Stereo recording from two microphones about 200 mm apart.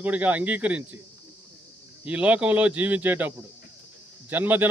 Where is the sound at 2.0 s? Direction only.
5° right (ahead or behind).